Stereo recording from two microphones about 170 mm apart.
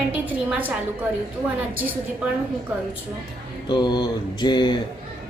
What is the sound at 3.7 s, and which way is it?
Speech, 25° left (ahead or behind).